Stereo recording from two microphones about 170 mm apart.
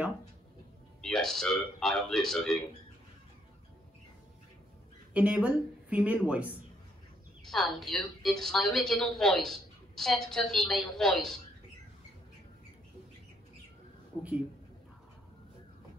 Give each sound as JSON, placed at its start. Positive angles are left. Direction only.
{"t": 1.0, "sound": "a woman's voice", "side_deg": 0}
{"t": 5.1, "sound": "a woman's voice", "side_deg": -5}
{"t": 7.4, "sound": "a woman's voice", "side_deg": 0}
{"t": 14.1, "sound": "a woman's voice", "side_deg": 15}